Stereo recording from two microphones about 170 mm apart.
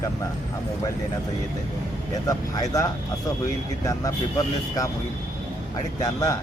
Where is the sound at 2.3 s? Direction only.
20° left (ahead or behind).